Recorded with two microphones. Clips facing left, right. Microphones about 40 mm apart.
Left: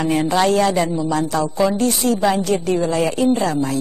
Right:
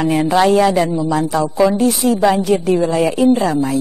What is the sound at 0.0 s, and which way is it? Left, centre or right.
A man's voice, centre.